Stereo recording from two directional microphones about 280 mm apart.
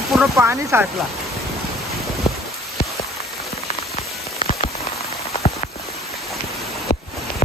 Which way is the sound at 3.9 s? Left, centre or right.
Left.